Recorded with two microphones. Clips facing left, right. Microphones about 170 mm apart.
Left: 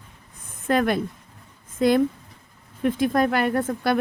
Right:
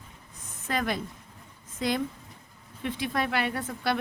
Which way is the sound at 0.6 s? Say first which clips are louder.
Left 9 dB; 55° left (ahead or behind).